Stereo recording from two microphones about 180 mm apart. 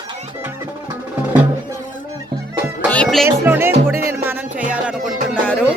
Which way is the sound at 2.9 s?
5° left (ahead or behind).